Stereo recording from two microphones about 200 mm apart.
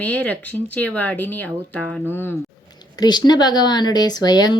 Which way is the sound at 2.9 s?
20° left (ahead or behind).